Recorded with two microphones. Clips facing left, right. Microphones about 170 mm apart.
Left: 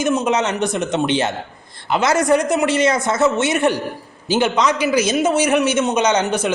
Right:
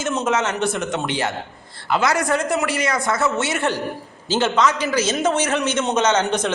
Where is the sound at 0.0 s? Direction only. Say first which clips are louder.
Left 3 dB; 15° left (ahead or behind).